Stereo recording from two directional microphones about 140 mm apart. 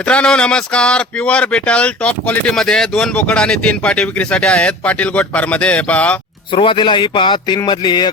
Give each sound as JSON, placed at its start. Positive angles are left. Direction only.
{"t": 0.1, "sound": "speech", "side_deg": 5}
{"t": 6.5, "sound": "a man's voice", "side_deg": 35}